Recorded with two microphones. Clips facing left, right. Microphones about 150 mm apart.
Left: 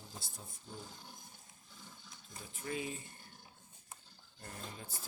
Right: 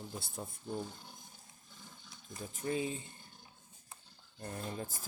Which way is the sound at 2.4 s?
35° right (ahead or behind).